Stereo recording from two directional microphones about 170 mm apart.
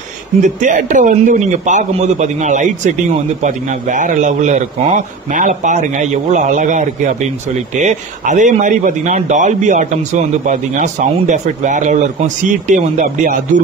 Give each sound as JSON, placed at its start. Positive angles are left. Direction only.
{"t": 0.4, "sound": "speech", "side_deg": -50}